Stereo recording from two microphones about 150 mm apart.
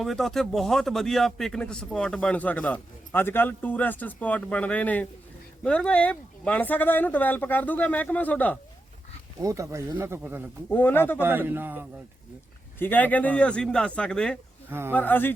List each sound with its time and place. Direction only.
0.0 s a man's voice: centre (ahead or behind)
9.4 s speech: 20° right (ahead or behind)
10.7 s a man's voice: 10° left (ahead or behind)
11.2 s speech: 15° right (ahead or behind)
12.8 s a man's voice: 10° left (ahead or behind)
14.7 s speech: 15° right (ahead or behind)
14.9 s a man's voice: 10° left (ahead or behind)